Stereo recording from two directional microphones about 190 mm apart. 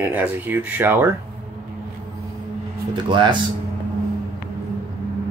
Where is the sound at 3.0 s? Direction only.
25° right (ahead or behind).